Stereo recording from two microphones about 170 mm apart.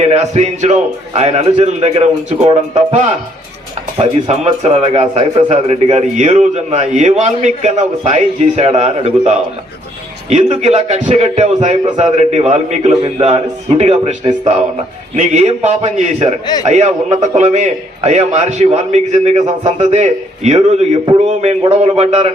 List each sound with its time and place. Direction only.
0.1 s a man's voice: 40° right (ahead or behind)